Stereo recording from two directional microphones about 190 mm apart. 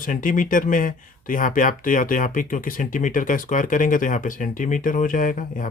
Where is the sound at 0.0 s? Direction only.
45° left (ahead or behind).